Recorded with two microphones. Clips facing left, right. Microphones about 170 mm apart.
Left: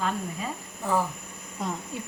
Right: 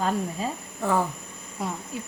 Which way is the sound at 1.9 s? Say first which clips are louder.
Right 1 dB; centre (ahead or behind).